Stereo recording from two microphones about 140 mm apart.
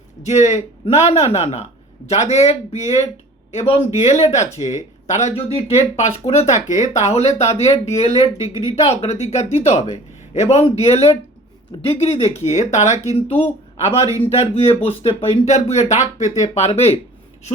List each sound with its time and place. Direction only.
0.2 s speech: 55° left (ahead or behind)